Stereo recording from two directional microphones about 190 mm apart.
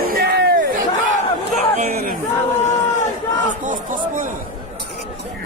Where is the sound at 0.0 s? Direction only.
55° right (ahead or behind).